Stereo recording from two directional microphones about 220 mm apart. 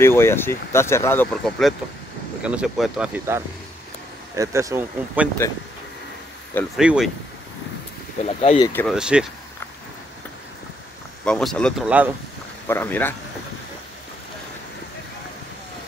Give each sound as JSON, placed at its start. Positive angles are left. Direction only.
{"t": 0.0, "sound": "speech", "side_deg": 10}
{"t": 6.8, "sound": "speech", "side_deg": -5}
{"t": 8.3, "sound": "speech", "side_deg": 25}
{"t": 8.7, "sound": "speech", "side_deg": 0}
{"t": 11.2, "sound": "speech", "side_deg": 5}
{"t": 12.6, "sound": "speech", "side_deg": 10}